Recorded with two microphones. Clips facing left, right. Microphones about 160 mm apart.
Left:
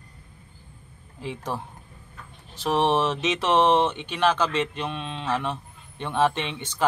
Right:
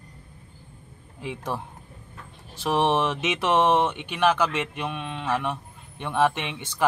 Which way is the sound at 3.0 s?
10° right (ahead or behind).